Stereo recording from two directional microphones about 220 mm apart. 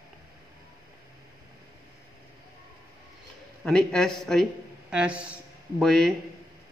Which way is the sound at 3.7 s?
5° left (ahead or behind).